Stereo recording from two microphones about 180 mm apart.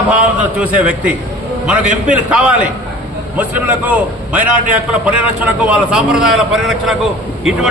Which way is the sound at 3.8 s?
10° right (ahead or behind).